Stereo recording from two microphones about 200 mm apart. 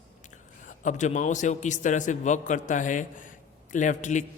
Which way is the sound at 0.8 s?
35° left (ahead or behind).